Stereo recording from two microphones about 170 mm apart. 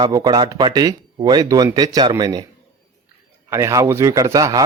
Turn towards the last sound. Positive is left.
turn(degrees=-20)  # may be behind; listen again after turning